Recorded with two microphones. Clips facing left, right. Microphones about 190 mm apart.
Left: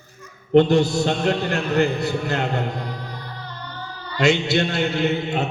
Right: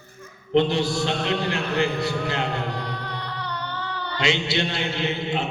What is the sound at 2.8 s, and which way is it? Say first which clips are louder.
Music: right 1 dB; 70° right (ahead or behind).